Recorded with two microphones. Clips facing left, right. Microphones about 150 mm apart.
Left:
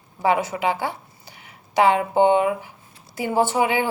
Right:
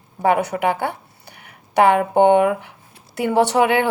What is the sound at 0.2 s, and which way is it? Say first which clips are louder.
A woman's voice: right 3 dB; 55° right (ahead or behind).